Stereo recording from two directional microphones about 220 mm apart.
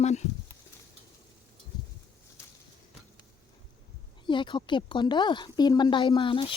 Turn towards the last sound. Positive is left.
turn(degrees=25)  # may be behind; listen again after turning